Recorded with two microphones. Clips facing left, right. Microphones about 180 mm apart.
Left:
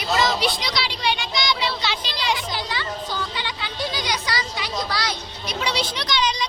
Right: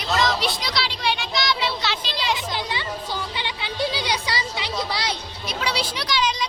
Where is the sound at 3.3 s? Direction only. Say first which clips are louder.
Right 2 dB; 20° right (ahead or behind).